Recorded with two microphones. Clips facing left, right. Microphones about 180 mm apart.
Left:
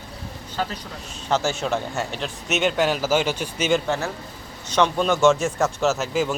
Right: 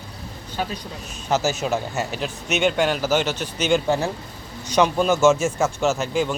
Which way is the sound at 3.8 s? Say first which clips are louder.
Right 3 dB; 15° right (ahead or behind).